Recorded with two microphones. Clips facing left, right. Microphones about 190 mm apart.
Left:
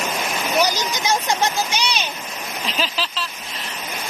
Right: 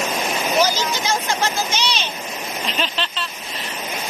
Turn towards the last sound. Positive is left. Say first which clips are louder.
# even
turn(degrees=0)  # may be behind; listen again after turning